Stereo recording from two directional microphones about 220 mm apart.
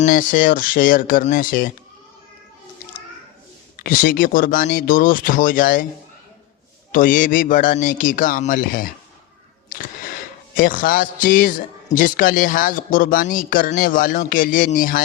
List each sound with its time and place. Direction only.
0.0 s a man's voice: 35° left (ahead or behind)
3.8 s a man's voice: 40° left (ahead or behind)
6.9 s a man's voice: 40° left (ahead or behind)
9.6 s a sound: 40° left (ahead or behind)
10.5 s a man's voice: 40° left (ahead or behind)